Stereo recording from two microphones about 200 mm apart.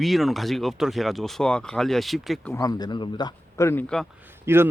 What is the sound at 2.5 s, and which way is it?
Speech, 20° left (ahead or behind).